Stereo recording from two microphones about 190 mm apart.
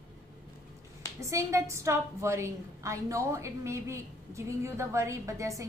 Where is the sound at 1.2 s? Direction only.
15° right (ahead or behind).